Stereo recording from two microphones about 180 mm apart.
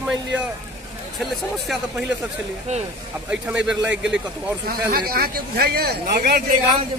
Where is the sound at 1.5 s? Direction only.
Centre (ahead or behind).